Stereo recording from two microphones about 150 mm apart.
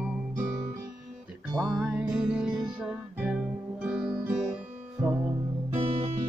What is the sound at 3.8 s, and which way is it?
Guitar, 5° right (ahead or behind).